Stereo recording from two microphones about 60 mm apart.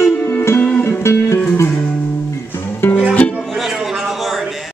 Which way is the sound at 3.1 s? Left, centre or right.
Left.